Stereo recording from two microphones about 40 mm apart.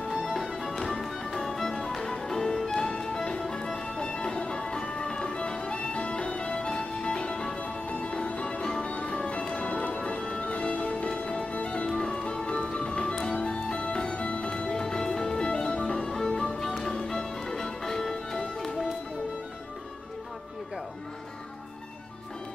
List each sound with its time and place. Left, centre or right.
0.4 s music: centre; by 7.5 s left
7.6 s music: left
8.8 s music: left; by 18.4 s centre